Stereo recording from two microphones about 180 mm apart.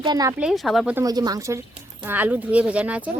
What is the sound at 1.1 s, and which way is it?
Speech, 20° right (ahead or behind).